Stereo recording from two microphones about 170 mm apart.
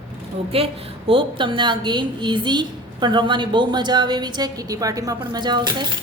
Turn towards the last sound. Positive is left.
turn(degrees=-25)  # may be behind; listen again after turning